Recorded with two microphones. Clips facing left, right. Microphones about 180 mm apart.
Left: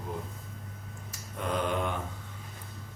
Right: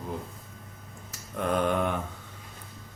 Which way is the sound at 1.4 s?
55° right (ahead or behind).